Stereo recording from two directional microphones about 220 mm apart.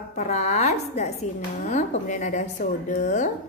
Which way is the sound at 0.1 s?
30° left (ahead or behind).